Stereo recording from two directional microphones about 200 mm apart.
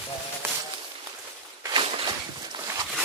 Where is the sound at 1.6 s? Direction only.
25° right (ahead or behind).